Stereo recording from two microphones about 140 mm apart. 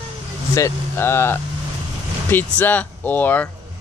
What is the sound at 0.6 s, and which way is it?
Speech, 20° left (ahead or behind).